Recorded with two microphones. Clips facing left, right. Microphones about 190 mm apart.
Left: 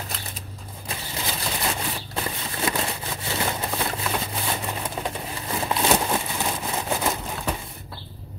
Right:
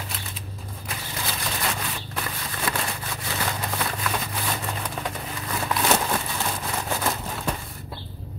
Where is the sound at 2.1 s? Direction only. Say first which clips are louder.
Left 3 dB; 25° left (ahead or behind).